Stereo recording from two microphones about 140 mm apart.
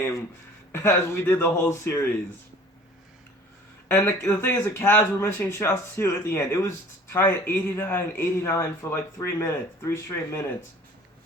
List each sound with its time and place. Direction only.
0.7 s speech: 20° left (ahead or behind)
3.8 s speech: 15° left (ahead or behind)